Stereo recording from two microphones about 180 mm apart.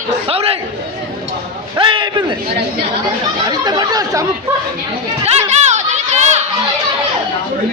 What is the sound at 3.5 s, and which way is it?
Speech, 20° right (ahead or behind).